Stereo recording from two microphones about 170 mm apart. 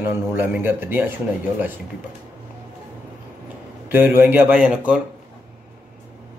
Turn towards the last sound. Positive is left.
turn(degrees=-5)  # may be behind; listen again after turning